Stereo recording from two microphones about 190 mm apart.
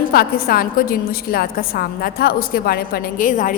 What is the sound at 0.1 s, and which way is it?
A woman's voice, 50° left (ahead or behind).